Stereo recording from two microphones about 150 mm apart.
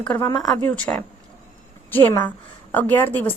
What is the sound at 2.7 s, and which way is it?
Speech, 10° left (ahead or behind).